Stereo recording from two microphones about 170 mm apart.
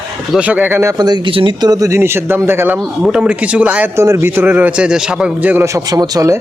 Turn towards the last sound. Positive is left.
turn(degrees=-20)  # may be behind; listen again after turning